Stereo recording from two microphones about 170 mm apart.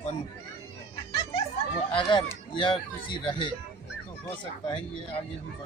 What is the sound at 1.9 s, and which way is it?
Speech, 30° left (ahead or behind).